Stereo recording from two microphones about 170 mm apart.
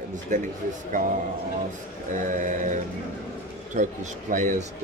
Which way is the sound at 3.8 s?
50° right (ahead or behind).